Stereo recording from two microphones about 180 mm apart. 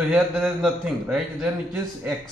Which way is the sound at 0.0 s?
Centre (ahead or behind).